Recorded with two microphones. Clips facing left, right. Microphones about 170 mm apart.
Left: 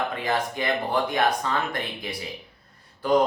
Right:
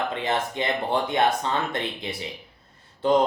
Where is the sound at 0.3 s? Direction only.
25° right (ahead or behind).